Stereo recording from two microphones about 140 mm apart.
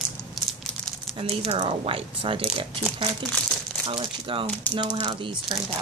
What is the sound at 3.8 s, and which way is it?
Speech, 40° right (ahead or behind).